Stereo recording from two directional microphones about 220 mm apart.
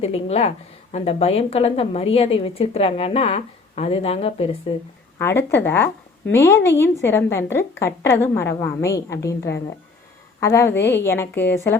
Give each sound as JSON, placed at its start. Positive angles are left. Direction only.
{"t": 0.0, "sound": "a woman's voice", "side_deg": 30}
{"t": 5.1, "sound": "a woman's voice", "side_deg": 10}